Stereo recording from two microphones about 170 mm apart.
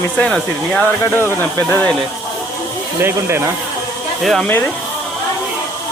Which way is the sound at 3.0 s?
15° right (ahead or behind).